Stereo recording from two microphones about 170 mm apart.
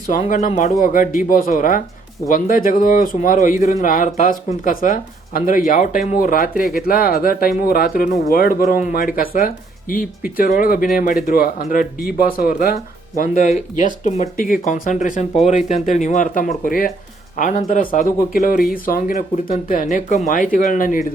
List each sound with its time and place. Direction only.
0.1 s a man's voice: 50° left (ahead or behind)
17.3 s a man's voice: 45° left (ahead or behind)